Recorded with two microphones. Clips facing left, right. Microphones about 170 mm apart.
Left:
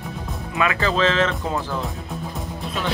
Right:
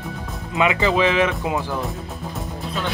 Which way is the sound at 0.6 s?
15° right (ahead or behind).